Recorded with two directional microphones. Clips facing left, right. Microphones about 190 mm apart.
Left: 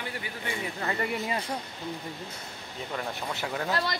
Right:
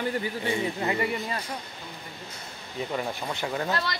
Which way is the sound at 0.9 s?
5° right (ahead or behind).